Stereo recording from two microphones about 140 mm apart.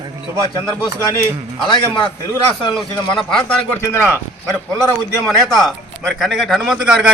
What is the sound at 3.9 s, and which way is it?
Speech, 15° left (ahead or behind).